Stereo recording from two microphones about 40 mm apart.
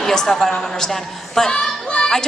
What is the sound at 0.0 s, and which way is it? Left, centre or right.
A woman's voice, centre.